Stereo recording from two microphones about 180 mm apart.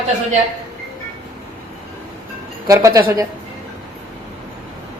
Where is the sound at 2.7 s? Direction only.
15° right (ahead or behind).